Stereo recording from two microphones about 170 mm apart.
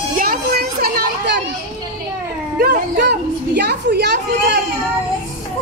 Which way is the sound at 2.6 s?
70° right (ahead or behind).